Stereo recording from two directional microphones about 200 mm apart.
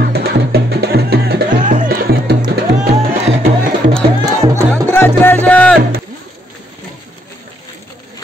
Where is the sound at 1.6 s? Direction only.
40° right (ahead or behind).